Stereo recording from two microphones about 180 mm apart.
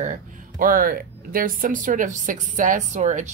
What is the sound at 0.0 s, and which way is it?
A woman's voice, 45° right (ahead or behind).